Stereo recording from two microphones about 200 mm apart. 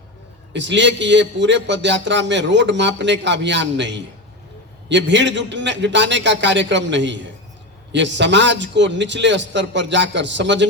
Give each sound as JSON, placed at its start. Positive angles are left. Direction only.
{"t": 0.5, "sound": "a man's voice", "side_deg": -65}